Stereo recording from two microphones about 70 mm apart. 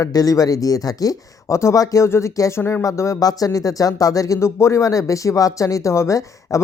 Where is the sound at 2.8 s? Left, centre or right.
Left.